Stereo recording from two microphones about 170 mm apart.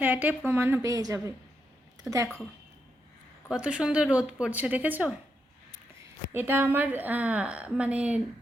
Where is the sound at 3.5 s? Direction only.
5° right (ahead or behind).